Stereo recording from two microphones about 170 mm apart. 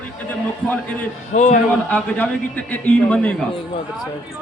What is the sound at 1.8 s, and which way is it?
A man's voice, 10° left (ahead or behind).